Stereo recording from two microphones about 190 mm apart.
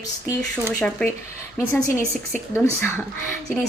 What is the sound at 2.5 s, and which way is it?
Speech, 10° left (ahead or behind).